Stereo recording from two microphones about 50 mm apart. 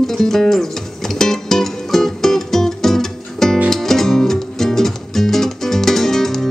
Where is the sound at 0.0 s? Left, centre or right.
Centre.